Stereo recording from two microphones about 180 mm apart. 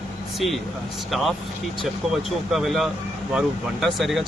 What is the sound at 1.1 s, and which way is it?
Speech, centre (ahead or behind).